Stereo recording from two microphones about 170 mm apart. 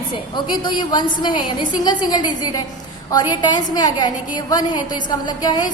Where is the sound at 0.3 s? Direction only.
25° left (ahead or behind).